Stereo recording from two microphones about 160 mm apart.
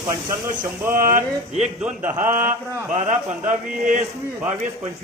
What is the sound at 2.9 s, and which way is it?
Speech, 50° right (ahead or behind).